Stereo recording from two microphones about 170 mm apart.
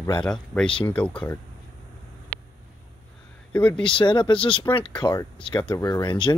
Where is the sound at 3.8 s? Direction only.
30° left (ahead or behind).